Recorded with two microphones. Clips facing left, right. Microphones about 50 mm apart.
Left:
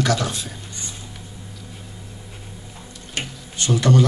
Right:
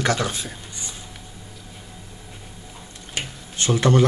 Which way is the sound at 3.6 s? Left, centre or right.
Right.